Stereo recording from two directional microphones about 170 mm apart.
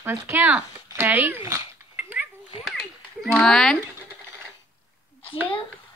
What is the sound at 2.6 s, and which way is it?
Children playing, centre (ahead or behind).